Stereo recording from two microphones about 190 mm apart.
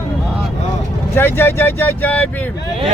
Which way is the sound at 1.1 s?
10° left (ahead or behind).